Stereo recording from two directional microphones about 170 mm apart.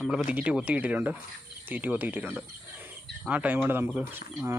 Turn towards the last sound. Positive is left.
turn(degrees=-10)  # may be behind; listen again after turning